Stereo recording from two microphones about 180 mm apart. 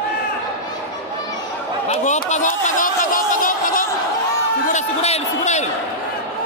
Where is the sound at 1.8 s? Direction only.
40° left (ahead or behind).